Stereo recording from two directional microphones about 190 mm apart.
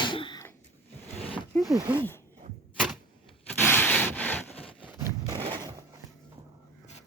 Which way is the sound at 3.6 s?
10° left (ahead or behind).